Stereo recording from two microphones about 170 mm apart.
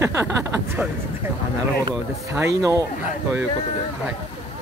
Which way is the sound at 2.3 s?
15° right (ahead or behind).